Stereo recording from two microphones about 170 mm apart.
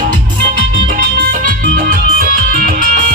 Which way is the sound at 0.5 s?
50° right (ahead or behind).